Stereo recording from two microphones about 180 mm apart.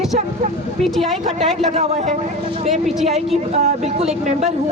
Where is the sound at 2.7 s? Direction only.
Centre (ahead or behind).